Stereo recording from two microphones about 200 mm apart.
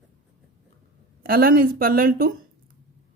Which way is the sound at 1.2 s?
45° right (ahead or behind).